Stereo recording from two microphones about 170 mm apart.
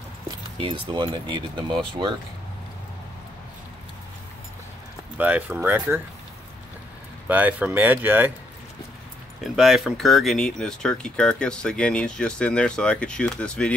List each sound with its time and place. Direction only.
0.6 s speech: 30° right (ahead or behind)
5.1 s speech: 10° right (ahead or behind)
7.2 s speech: 10° right (ahead or behind)
9.4 s speech: centre (ahead or behind)